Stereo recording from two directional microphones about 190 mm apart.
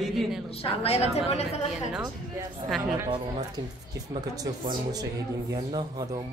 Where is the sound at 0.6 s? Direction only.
30° left (ahead or behind).